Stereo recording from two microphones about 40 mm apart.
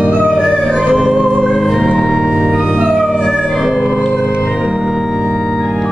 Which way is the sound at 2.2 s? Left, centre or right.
Centre.